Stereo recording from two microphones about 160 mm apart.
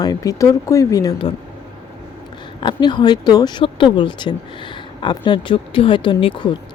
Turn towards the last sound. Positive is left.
turn(degrees=30)  # may be behind; listen again after turning